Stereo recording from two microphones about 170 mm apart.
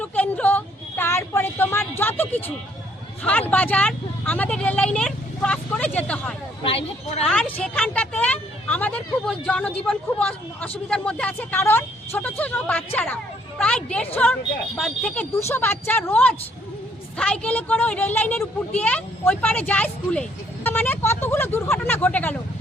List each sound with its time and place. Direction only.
0.0 s a sound: 10° left (ahead or behind)
3.2 s speech: 10° left (ahead or behind)
6.6 s speech: 35° left (ahead or behind)
7.3 s a woman's voice: 10° left (ahead or behind)